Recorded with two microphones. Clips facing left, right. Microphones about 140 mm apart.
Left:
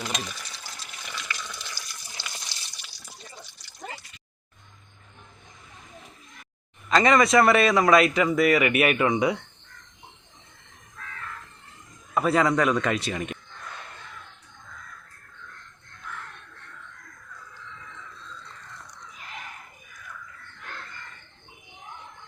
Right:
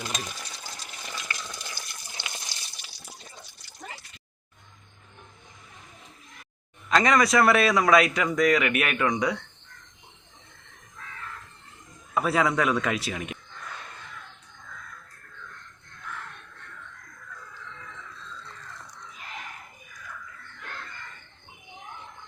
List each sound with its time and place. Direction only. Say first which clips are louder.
1.0 s water: left 1 dB; 35° right (ahead or behind)
2.2 s water: right 1 dB; 20° right (ahead or behind)
6.8 s speech: left 2 dB; centre (ahead or behind)
12.1 s speech: left 2 dB; centre (ahead or behind)